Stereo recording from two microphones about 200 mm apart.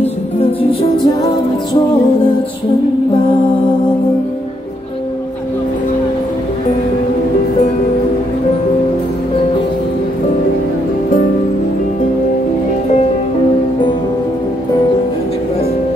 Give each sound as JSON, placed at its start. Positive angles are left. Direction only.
{"t": 0.0, "sound": "music", "side_deg": 30}